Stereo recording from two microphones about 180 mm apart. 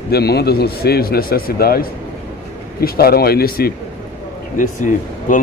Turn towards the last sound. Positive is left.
turn(degrees=45)  # may be behind; listen again after turning